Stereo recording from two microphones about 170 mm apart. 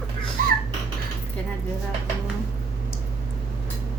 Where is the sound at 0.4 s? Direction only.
50° right (ahead or behind).